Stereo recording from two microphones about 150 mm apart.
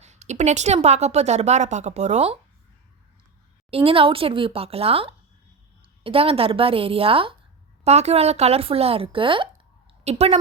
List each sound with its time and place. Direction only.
0.0 s a woman's voice: 50° right (ahead or behind)
3.7 s speech: 40° right (ahead or behind)
10.0 s a woman's voice: 45° right (ahead or behind)